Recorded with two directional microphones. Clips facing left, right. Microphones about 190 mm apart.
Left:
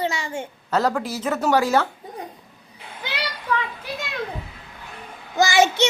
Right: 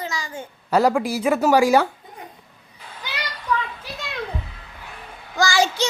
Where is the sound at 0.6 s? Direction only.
10° right (ahead or behind).